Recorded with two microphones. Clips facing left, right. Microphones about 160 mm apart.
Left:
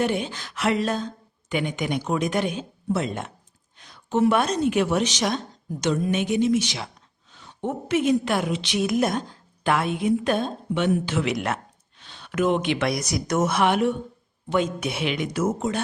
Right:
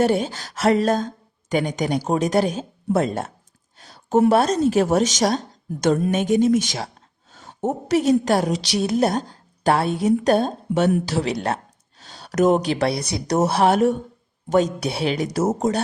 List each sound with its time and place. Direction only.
0.0 s speech: 40° right (ahead or behind)
3.8 s a sound: 40° right (ahead or behind)
4.3 s speech: 40° right (ahead or behind)